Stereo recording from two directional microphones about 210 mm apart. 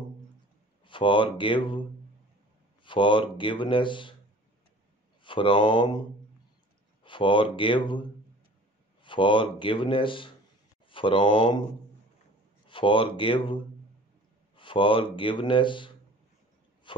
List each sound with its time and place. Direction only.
0.8 s speech: 25° left (ahead or behind)
2.8 s speech: 25° left (ahead or behind)
5.2 s speech: 25° left (ahead or behind)
7.0 s speech: 25° left (ahead or behind)
12.6 s speech: 25° left (ahead or behind)
16.9 s a sound: 25° left (ahead or behind)